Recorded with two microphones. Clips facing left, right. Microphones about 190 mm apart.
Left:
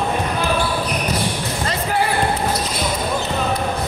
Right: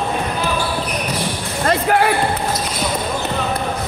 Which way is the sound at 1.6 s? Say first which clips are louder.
Right 6 dB; 60° right (ahead or behind).